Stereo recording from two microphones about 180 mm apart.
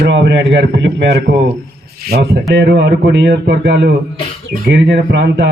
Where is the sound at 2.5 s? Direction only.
75° right (ahead or behind).